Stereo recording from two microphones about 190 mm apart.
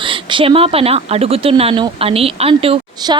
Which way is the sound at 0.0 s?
25° right (ahead or behind).